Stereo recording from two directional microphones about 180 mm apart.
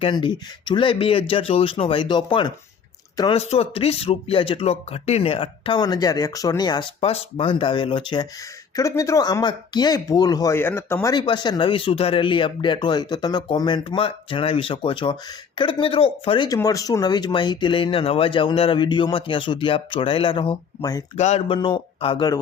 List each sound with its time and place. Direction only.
0.0 s speech: 25° left (ahead or behind)
11.1 s speech: 25° left (ahead or behind)
21.2 s speech: 35° left (ahead or behind)